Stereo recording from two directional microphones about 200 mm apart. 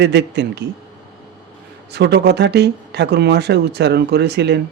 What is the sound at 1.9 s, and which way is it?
Speech, 55° right (ahead or behind).